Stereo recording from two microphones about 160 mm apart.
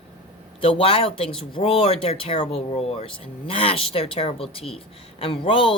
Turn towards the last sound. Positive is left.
turn(degrees=35)  # may be behind; listen again after turning